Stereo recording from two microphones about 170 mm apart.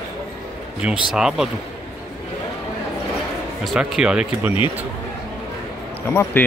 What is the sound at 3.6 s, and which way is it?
Speech, 5° right (ahead or behind).